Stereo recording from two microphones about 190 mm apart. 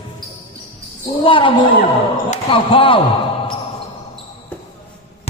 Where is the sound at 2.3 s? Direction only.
30° left (ahead or behind).